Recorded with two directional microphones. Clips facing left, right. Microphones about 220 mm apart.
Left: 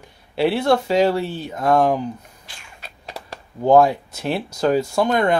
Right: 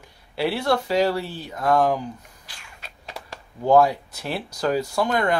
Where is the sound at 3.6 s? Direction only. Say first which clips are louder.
Left 3 dB; 25° left (ahead or behind).